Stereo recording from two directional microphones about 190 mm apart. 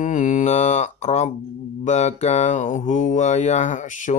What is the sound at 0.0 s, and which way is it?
Mantra, 40° left (ahead or behind).